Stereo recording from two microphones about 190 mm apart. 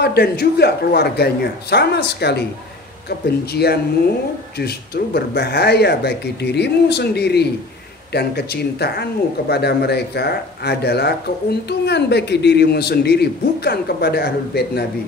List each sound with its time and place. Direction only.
0.0 s speech: 55° left (ahead or behind)